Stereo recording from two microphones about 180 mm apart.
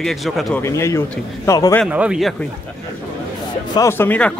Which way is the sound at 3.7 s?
15° left (ahead or behind).